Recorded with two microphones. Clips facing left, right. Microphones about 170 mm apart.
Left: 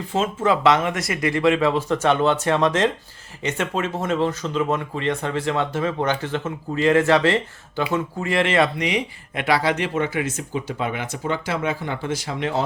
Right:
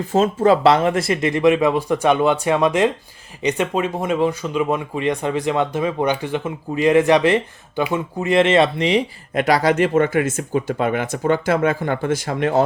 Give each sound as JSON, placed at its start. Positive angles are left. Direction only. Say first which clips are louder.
{"t": 0.1, "sound": "speech", "louder": "right 6 dB", "side_deg": -40}